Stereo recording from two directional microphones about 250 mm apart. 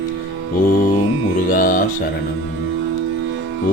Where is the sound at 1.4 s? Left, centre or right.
Left.